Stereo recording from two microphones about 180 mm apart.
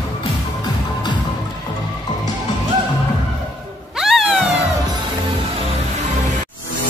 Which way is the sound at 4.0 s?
Centre (ahead or behind).